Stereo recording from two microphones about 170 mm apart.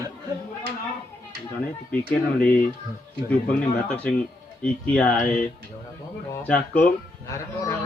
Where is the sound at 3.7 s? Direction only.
10° left (ahead or behind).